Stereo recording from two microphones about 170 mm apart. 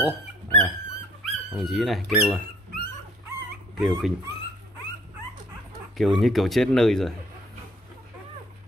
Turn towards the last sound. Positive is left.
turn(degrees=5)  # may be behind; listen again after turning